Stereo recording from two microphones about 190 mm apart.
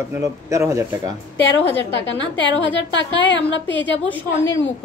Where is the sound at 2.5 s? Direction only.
80° left.